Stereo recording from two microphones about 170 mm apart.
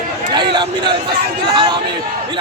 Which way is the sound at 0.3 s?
25° right (ahead or behind).